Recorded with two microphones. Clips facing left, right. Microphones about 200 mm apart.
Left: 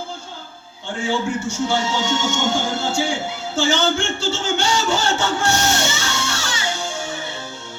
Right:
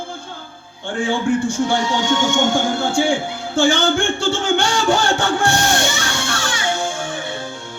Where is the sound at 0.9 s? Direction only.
55° right (ahead or behind).